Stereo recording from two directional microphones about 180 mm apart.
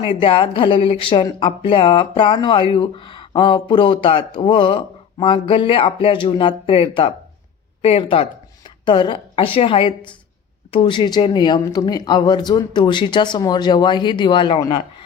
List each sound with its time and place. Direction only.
0.0 s speech: 30° left (ahead or behind)